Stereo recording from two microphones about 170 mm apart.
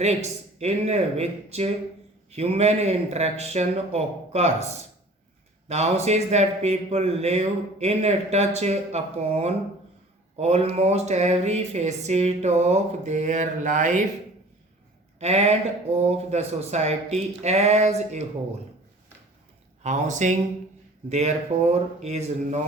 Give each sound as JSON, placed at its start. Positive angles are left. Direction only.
{"t": 0.0, "sound": "speech", "side_deg": -40}
{"t": 5.6, "sound": "speech", "side_deg": -40}
{"t": 15.2, "sound": "speech", "side_deg": -40}
{"t": 19.8, "sound": "speech", "side_deg": -45}